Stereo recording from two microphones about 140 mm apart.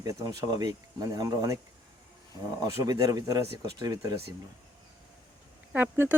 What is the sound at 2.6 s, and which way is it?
Speech, 25° right (ahead or behind).